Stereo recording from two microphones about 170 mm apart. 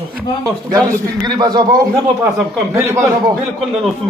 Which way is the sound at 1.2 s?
25° right (ahead or behind).